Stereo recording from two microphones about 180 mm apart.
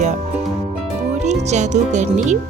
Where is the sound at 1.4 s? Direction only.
40° right (ahead or behind).